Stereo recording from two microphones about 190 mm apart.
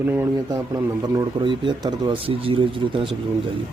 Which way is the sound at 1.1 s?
25° right (ahead or behind).